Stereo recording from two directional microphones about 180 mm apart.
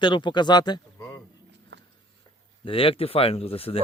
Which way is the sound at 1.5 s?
75° right (ahead or behind).